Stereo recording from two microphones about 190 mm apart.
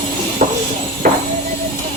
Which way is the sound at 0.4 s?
45° right (ahead or behind).